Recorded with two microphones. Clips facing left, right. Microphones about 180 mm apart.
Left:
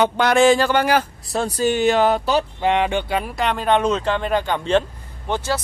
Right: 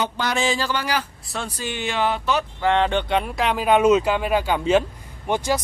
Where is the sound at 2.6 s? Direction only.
15° left (ahead or behind); by 5.6 s 15° right (ahead or behind).